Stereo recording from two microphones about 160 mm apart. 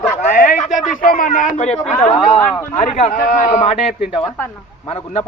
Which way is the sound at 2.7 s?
45° left (ahead or behind).